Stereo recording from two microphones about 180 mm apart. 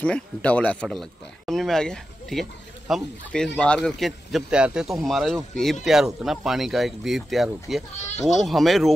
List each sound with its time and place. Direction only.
0.0 s speech: 5° left (ahead or behind)
8.0 s speech: 40° left (ahead or behind)
8.4 s speech: centre (ahead or behind)